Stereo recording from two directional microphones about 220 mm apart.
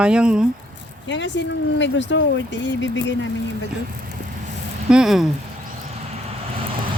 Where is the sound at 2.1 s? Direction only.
60° left (ahead or behind).